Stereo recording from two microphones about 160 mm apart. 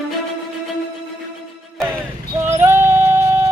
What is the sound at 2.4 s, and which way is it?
Music, 15° right (ahead or behind).